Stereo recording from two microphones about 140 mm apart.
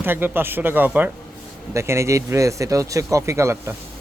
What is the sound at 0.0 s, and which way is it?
Speech, 15° right (ahead or behind).